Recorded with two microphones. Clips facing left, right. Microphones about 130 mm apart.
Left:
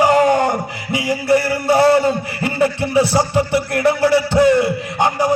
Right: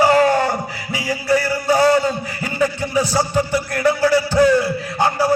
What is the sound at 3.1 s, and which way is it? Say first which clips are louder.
Music: left 2 dB; 25° left (ahead or behind).